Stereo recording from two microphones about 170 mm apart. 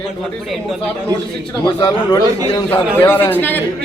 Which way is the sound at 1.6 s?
25° left (ahead or behind).